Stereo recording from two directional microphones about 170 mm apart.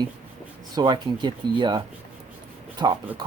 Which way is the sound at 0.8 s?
25° right (ahead or behind).